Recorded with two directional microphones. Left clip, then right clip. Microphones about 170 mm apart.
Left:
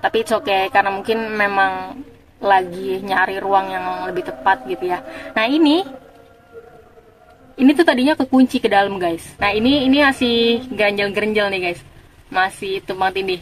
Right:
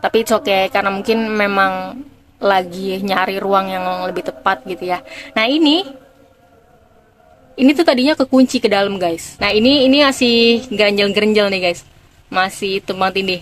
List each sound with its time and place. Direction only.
0.0 s a woman's voice: 30° right (ahead or behind)
7.5 s a woman's voice: 20° right (ahead or behind)